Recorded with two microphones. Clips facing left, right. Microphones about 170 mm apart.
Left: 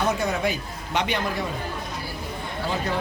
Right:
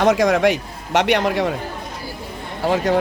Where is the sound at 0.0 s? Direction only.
90° right.